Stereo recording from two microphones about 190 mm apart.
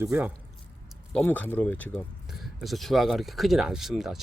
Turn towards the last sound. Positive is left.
turn(degrees=0)  # may be behind; listen again after turning